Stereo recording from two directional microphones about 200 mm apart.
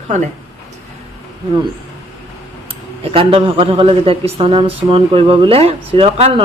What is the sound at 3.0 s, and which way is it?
Speech, 30° right (ahead or behind).